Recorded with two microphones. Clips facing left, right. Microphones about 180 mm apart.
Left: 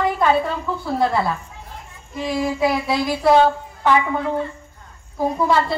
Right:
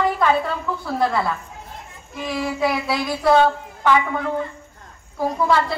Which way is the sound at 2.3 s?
20° left (ahead or behind).